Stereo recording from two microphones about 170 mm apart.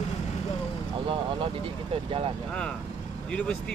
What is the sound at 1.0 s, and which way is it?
Speech, 30° right (ahead or behind).